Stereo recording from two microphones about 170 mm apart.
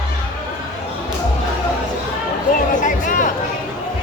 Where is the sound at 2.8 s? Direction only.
50° left (ahead or behind).